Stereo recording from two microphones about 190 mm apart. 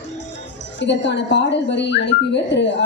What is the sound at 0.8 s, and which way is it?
Speech, 70° left (ahead or behind).